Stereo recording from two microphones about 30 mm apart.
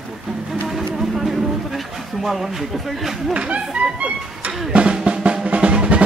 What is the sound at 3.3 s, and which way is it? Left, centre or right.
Speech, right.